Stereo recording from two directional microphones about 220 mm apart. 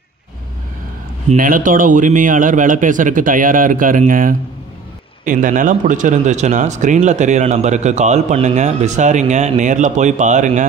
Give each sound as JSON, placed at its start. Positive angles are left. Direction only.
{"t": 1.3, "sound": "a man's voice", "side_deg": -40}